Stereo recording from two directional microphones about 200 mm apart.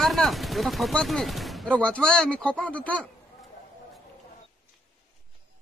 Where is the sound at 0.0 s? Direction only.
Centre (ahead or behind).